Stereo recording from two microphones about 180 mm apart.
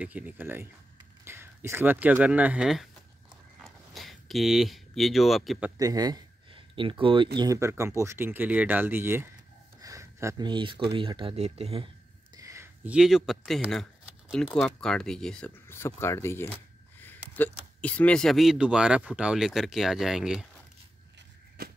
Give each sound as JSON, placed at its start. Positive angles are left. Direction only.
{"t": 0.0, "sound": "speech", "side_deg": -10}
{"t": 3.5, "sound": "a sound", "side_deg": 0}
{"t": 5.8, "sound": "speech", "side_deg": -20}
{"t": 7.3, "sound": "speech", "side_deg": -20}
{"t": 9.8, "sound": "a sound", "side_deg": -20}
{"t": 11.0, "sound": "speech", "side_deg": -25}
{"t": 12.4, "sound": "speech", "side_deg": -15}